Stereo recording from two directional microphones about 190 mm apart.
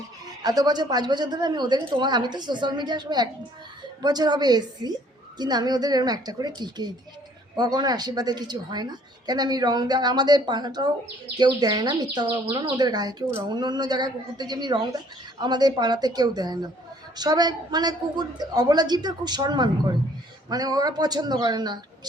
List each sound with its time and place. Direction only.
0.4 s speech: 20° right (ahead or behind)